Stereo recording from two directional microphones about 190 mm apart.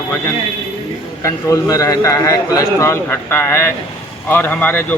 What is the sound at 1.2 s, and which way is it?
Speech, 15° left (ahead or behind).